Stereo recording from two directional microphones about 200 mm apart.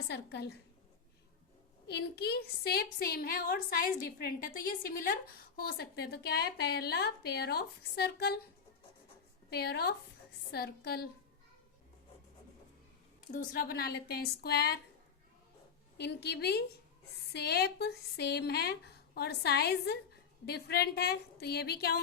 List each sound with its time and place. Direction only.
0.1 s speech: 55° left (ahead or behind)
1.9 s a woman's voice: 55° left (ahead or behind)
9.5 s a woman's voice: 55° left (ahead or behind)
13.3 s a woman's voice: 45° left (ahead or behind)
16.0 s a woman's voice: 55° left (ahead or behind)